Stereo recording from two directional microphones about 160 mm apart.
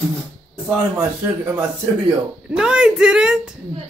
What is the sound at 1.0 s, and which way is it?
A man's voice, 15° right (ahead or behind).